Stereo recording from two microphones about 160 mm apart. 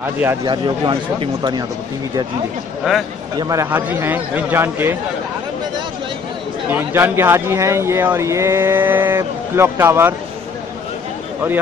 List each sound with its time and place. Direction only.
0.5 s speech: 30° right (ahead or behind)
2.9 s speech: 5° right (ahead or behind)
3.3 s speech: 20° right (ahead or behind)
6.7 s speech: 15° right (ahead or behind)